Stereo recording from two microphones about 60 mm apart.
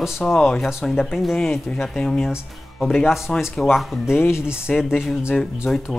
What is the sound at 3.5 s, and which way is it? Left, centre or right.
Speech, centre.